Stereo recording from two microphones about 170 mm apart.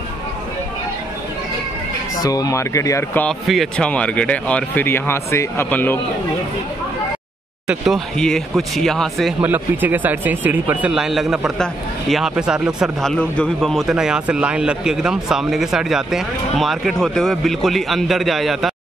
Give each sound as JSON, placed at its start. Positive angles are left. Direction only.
{"t": 2.2, "sound": "speech", "side_deg": 20}
{"t": 3.3, "sound": "speech", "side_deg": 0}
{"t": 7.6, "sound": "speech", "side_deg": 0}
{"t": 9.4, "sound": "speech", "side_deg": -10}